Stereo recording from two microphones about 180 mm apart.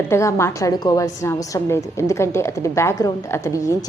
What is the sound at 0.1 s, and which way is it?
A woman's voice, 15° left (ahead or behind).